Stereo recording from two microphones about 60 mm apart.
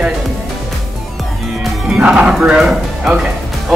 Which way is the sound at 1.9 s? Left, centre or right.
Centre.